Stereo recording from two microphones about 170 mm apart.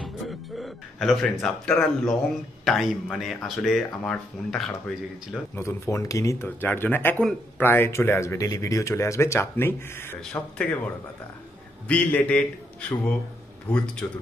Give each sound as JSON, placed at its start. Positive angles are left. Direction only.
{"t": 0.0, "sound": "music", "side_deg": 0}
{"t": 2.6, "sound": "speech", "side_deg": 0}
{"t": 5.6, "sound": "speech", "side_deg": 15}
{"t": 11.9, "sound": "speech", "side_deg": 10}
{"t": 13.7, "sound": "speech", "side_deg": 5}